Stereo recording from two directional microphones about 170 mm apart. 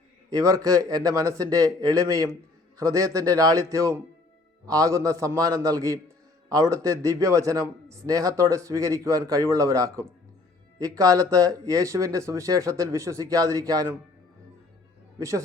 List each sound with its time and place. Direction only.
0.3 s speech: 20° right (ahead or behind)
15.2 s speech: 15° right (ahead or behind)